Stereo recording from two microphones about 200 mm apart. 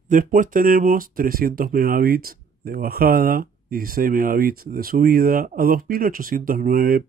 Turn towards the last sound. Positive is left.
turn(degrees=-45)  # may be behind; listen again after turning